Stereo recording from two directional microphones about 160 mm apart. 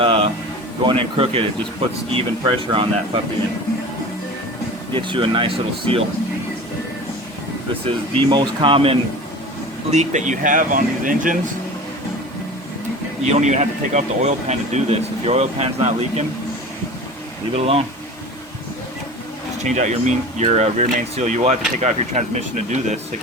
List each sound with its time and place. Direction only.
0.0 s music: 35° right (ahead or behind)
0.9 s speech: 35° right (ahead or behind)
4.9 s speech: 30° right (ahead or behind)
7.9 s speech: 30° right (ahead or behind)
9.9 s speech: 45° right (ahead or behind)
13.2 s speech: 45° right (ahead or behind)
17.5 s speech: 40° right (ahead or behind)
19.6 s speech: 45° right (ahead or behind)